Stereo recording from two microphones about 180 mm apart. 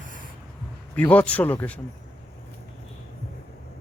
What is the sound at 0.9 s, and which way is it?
Speech, 10° left (ahead or behind).